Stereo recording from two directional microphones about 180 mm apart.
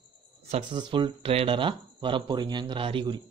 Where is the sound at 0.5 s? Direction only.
25° right (ahead or behind).